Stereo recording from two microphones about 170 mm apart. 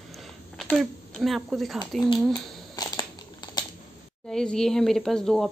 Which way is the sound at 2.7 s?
20° left (ahead or behind).